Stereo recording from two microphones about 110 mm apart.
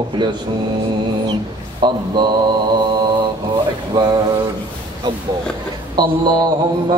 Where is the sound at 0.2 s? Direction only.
45° right (ahead or behind).